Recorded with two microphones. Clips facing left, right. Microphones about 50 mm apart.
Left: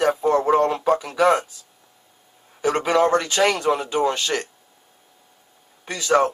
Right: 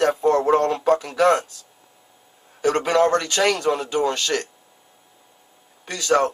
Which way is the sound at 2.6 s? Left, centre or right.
Centre.